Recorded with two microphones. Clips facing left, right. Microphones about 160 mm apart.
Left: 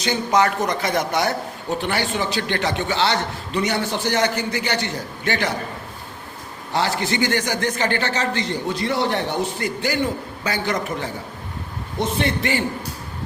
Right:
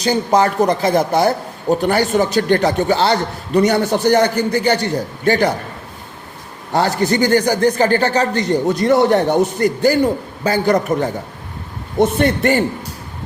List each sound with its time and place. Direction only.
0.0 s a man's voice: 35° right (ahead or behind)
6.7 s a man's voice: 40° right (ahead or behind)